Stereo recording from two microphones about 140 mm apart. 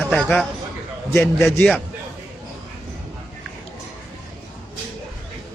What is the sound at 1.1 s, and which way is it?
Speech, 15° left (ahead or behind).